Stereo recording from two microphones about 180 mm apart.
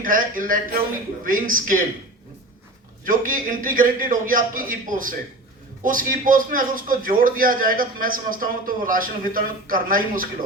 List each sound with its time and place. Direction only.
0.0 s a man's voice: 50° right (ahead or behind)
3.0 s a man's voice: 50° right (ahead or behind)